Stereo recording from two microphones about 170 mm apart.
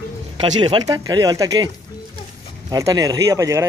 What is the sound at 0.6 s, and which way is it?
Speech, 30° right (ahead or behind).